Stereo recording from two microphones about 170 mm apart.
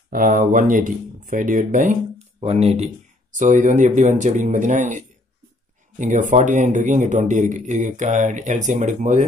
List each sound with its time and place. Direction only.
0.1 s a man's voice: 50° right (ahead or behind)
2.4 s a man's voice: 35° right (ahead or behind)